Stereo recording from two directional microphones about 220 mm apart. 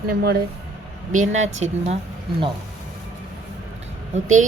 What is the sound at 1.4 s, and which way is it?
Speech, 30° right (ahead or behind).